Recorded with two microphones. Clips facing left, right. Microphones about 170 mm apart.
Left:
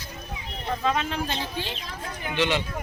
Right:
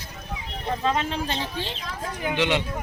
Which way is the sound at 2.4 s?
15° right (ahead or behind).